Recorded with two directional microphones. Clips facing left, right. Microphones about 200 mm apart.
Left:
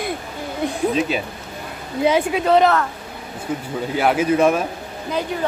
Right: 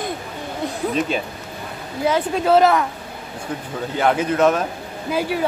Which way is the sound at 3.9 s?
10° left (ahead or behind).